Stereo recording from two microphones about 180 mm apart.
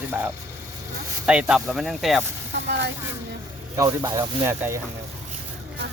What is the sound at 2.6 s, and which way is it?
Speech, 70° right (ahead or behind).